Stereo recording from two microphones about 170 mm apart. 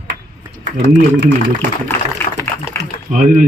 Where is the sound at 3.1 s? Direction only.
50° right (ahead or behind).